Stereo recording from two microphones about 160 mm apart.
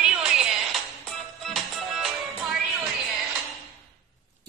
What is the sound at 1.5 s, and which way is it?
Music, centre (ahead or behind).